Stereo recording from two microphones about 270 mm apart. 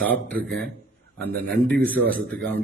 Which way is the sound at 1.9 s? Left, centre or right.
Centre.